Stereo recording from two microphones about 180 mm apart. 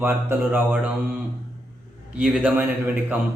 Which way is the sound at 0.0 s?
10° right (ahead or behind).